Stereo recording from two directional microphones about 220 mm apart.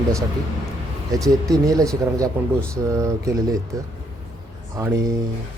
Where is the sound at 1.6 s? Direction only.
15° right (ahead or behind).